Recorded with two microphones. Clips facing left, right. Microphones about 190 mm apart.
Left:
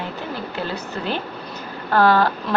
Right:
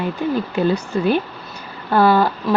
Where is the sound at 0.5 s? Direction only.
15° right (ahead or behind).